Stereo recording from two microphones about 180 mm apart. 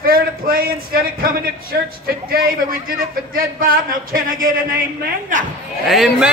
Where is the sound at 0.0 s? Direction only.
55° right (ahead or behind).